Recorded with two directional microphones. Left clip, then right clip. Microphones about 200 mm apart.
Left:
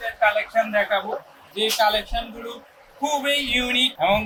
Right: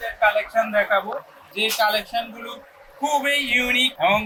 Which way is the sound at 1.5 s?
20° right (ahead or behind).